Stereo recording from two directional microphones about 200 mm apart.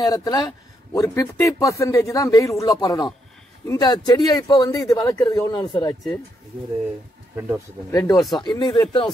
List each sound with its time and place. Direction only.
0.0 s a man's voice: 20° left (ahead or behind)
7.3 s speech: 15° right (ahead or behind)
7.9 s a man's voice: 15° left (ahead or behind)